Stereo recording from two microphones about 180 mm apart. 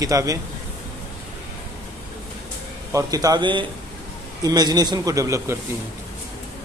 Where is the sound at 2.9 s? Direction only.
20° right (ahead or behind).